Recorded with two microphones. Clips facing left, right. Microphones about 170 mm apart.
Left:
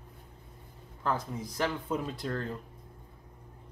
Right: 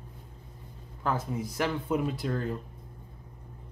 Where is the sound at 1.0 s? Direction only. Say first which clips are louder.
Right 2 dB; 10° right (ahead or behind).